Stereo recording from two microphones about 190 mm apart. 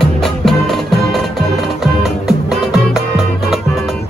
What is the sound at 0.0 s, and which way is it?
Music, centre (ahead or behind).